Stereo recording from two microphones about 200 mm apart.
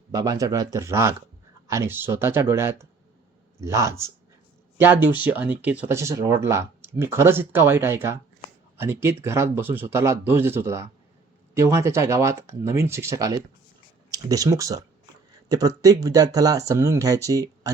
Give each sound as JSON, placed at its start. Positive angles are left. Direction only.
{"t": 0.1, "sound": "speech", "side_deg": -20}